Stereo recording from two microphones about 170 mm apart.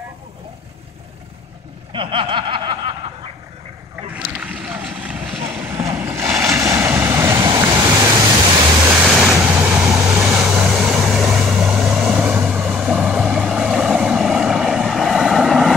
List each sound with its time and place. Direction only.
1.9 s snicker: 30° right (ahead or behind)
4.4 s vehicle: 10° right (ahead or behind)
5.7 s vehicle: 15° right (ahead or behind)
6.2 s waves: centre (ahead or behind)
6.5 s vehicle: 15° right (ahead or behind)
7.7 s waterfall: 25° right (ahead or behind)
9.0 s waves: 5° right (ahead or behind)
9.4 s vehicle: 10° right (ahead or behind)